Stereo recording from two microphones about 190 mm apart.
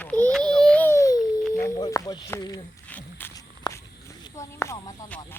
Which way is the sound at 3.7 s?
20° left (ahead or behind).